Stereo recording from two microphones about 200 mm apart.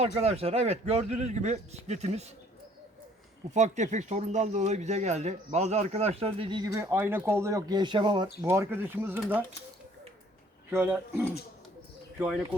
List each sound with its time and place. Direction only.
0.0 s speech: 30° right (ahead or behind)
3.5 s speech: 35° right (ahead or behind)
6.7 s speech: 10° right (ahead or behind)
8.4 s speech: 10° right (ahead or behind)
10.7 s speech: 10° right (ahead or behind)